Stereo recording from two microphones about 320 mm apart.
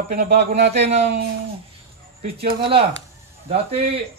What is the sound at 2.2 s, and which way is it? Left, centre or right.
Speech, centre.